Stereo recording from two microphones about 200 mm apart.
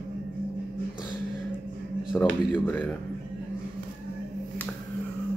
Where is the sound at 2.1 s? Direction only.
5° left (ahead or behind).